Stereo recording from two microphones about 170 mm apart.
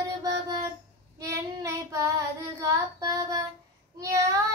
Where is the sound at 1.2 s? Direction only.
20° right (ahead or behind).